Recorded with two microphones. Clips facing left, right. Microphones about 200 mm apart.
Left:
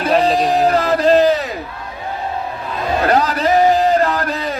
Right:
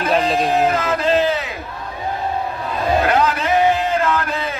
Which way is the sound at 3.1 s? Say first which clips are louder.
Left 2 dB; 40° left (ahead or behind).